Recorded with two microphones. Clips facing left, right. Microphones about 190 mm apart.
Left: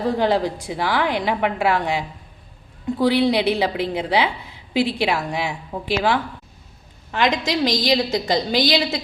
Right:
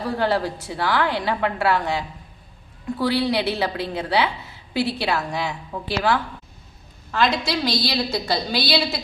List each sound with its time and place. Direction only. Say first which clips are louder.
0.2 s a woman's voice: left 3 dB; 20° left (ahead or behind)